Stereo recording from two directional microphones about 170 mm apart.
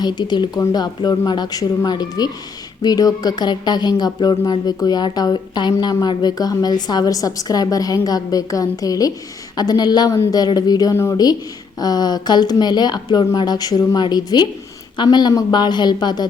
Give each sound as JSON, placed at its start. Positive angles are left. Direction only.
{"t": 0.0, "sound": "speech", "side_deg": 25}